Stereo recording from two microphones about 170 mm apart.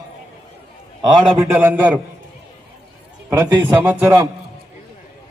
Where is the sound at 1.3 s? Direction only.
10° right (ahead or behind).